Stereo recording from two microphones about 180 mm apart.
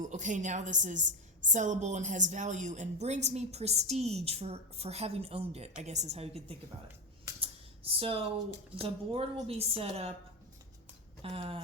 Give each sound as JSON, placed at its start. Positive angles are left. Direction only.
{"t": 0.0, "sound": "a woman's voice", "side_deg": -45}
{"t": 7.9, "sound": "a woman's voice", "side_deg": -30}
{"t": 11.2, "sound": "speech", "side_deg": -30}